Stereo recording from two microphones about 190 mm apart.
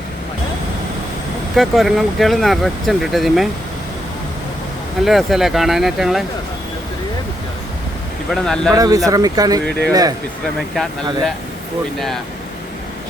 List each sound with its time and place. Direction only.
1.5 s speech: centre (ahead or behind)
5.0 s speech: centre (ahead or behind)
8.3 s speech: centre (ahead or behind)
8.7 s speech: 20° right (ahead or behind)
10.8 s speech: 5° left (ahead or behind)
11.9 s speech: centre (ahead or behind)